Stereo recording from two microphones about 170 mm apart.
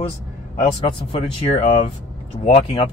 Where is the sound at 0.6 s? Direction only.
35° left (ahead or behind).